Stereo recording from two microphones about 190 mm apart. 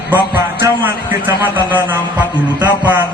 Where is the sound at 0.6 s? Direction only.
10° right (ahead or behind).